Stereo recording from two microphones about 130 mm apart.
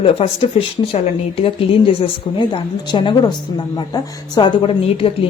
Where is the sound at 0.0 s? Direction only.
45° left (ahead or behind).